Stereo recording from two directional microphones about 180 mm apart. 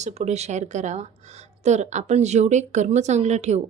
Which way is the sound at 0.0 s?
40° right (ahead or behind).